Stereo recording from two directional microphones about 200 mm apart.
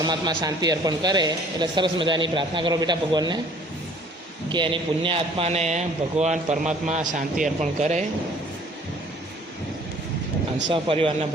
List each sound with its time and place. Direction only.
0.0 s speech: 20° right (ahead or behind)
4.5 s a man's voice: 25° right (ahead or behind)
10.7 s speech: 25° right (ahead or behind)